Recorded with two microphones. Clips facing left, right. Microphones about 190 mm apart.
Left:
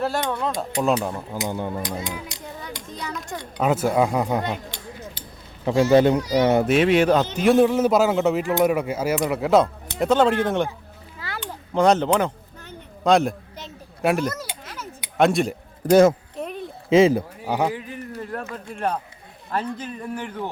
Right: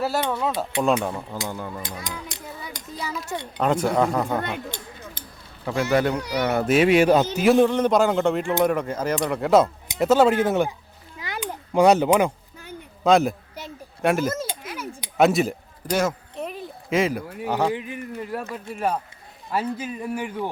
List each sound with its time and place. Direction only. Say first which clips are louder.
0.0 s speech: even; 5° right (ahead or behind)
1.4 s a child's voice: left 4 dB; 20° left (ahead or behind)
2.3 s a sound: left 1 dB; 55° right (ahead or behind)
3.0 s speech: right 3 dB; 5° right (ahead or behind)
3.6 s speech: left 1 dB; 5° left (ahead or behind)
4.4 s a sound: left 2 dB; 55° right (ahead or behind)
5.6 s a child's voice: left 6 dB; 25° left (ahead or behind)
6.7 s a man's voice: right 1 dB; 5° right (ahead or behind)
11.2 s a sound: right 3 dB; 15° right (ahead or behind)
14.0 s speech: even; centre (ahead or behind)
14.6 s a sound: right 4 dB; 10° right (ahead or behind)
16.9 s a child's voice: left 7 dB; 25° left (ahead or behind)
17.4 s speech: right 4 dB; 5° left (ahead or behind)
17.7 s a man's voice: right 1 dB; 15° right (ahead or behind)